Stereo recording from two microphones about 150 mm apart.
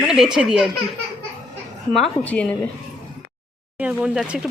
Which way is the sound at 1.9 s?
5° left (ahead or behind).